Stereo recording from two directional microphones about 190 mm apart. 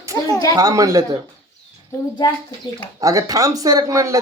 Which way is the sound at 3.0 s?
15° right (ahead or behind).